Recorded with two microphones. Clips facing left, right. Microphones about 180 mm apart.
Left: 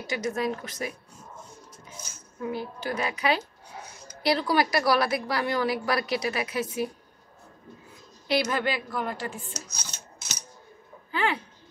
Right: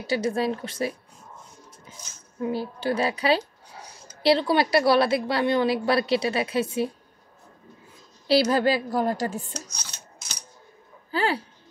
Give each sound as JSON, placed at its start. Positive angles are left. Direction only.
{"t": 0.0, "sound": "a woman's voice", "side_deg": -30}
{"t": 2.4, "sound": "a woman's voice", "side_deg": -30}
{"t": 8.3, "sound": "a woman's voice", "side_deg": -35}
{"t": 11.1, "sound": "a sound", "side_deg": -35}